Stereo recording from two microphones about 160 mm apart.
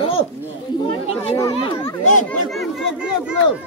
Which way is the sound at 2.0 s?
50° left (ahead or behind).